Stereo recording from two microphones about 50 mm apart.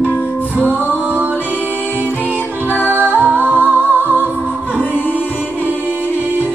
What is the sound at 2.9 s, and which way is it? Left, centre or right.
Music, right.